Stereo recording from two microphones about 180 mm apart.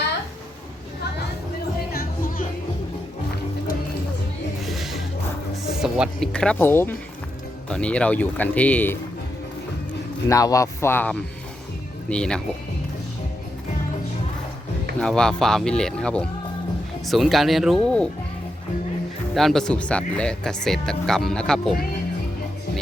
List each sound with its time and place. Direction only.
1.9 s music: 55° left (ahead or behind)
4.6 s music: centre (ahead or behind)
5.8 s speech: centre (ahead or behind)
10.2 s speech: 20° left (ahead or behind)
14.9 s speech: 5° left (ahead or behind)
19.3 s speech: centre (ahead or behind)